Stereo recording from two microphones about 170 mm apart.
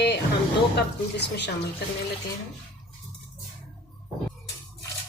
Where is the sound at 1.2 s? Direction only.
80° left.